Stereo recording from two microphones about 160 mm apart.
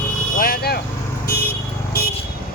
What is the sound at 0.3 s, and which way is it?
Vehicle, 65° left (ahead or behind).